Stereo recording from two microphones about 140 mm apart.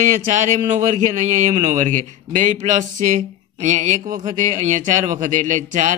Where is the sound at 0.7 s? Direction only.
60° right (ahead or behind).